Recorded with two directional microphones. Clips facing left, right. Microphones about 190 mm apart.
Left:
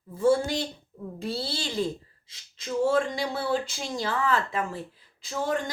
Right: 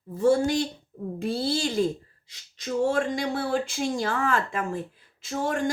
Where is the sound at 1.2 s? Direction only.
50° right (ahead or behind).